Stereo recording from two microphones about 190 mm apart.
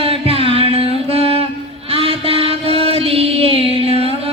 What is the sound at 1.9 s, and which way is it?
Child singing, 30° right (ahead or behind).